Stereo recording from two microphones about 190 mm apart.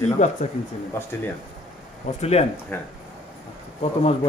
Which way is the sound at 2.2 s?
35° left (ahead or behind).